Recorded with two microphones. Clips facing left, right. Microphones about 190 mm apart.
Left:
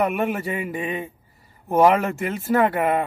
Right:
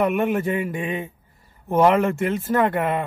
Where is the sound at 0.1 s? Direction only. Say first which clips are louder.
Right 3 dB; centre (ahead or behind).